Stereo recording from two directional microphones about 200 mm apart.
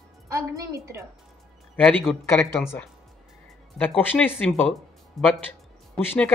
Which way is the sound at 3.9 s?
10° left (ahead or behind).